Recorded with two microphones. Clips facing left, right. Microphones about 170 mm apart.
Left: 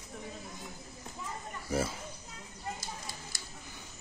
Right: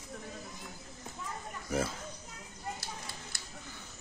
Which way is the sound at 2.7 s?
60° right (ahead or behind).